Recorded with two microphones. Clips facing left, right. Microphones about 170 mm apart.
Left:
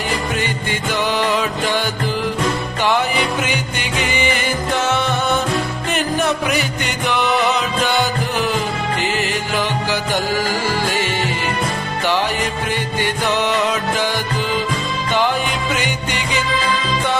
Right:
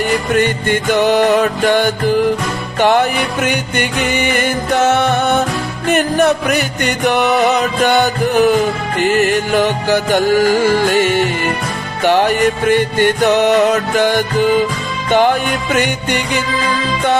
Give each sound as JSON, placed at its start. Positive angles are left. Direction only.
{"t": 0.3, "sound": "music", "side_deg": -55}
{"t": 12.0, "sound": "music", "side_deg": -55}